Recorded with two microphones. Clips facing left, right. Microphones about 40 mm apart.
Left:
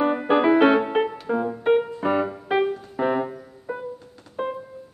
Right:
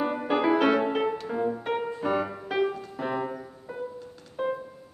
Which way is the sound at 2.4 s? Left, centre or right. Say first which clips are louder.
Left 4 dB; left.